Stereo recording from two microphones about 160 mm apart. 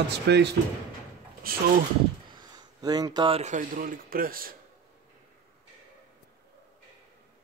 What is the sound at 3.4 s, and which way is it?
Speech, 55° right (ahead or behind).